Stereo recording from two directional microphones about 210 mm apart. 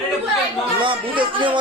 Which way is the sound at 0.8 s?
25° right (ahead or behind).